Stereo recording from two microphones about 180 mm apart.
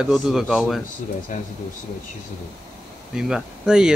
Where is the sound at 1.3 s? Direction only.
45° left (ahead or behind).